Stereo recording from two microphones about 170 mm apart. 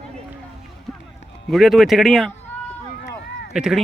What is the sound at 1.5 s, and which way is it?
Speech, centre (ahead or behind).